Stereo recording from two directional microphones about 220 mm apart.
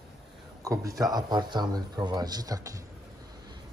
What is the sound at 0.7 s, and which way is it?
Speech, 15° right (ahead or behind).